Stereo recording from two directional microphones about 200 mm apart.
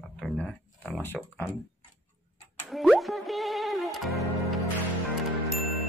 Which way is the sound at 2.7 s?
Centre (ahead or behind).